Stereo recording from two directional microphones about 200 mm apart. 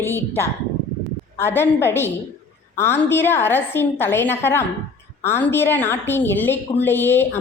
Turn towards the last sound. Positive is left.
turn(degrees=10)  # may be behind; listen again after turning